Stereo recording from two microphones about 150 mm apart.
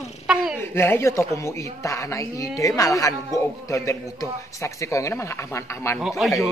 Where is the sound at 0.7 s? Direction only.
15° left (ahead or behind).